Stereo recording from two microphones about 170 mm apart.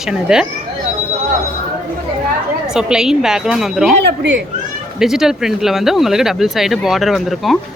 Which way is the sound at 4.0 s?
85° right.